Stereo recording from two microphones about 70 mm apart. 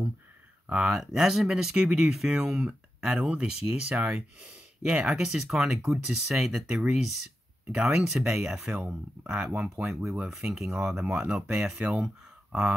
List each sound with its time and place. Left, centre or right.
0.7 s speech: centre
0.9 s speech: centre